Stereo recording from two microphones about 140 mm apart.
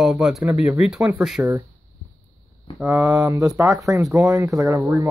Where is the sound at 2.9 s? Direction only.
25° right (ahead or behind).